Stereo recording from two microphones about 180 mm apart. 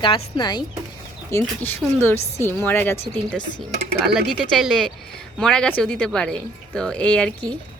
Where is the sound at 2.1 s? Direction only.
35° left (ahead or behind).